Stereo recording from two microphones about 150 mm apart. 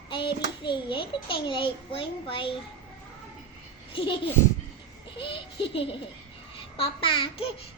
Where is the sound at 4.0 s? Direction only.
35° left (ahead or behind).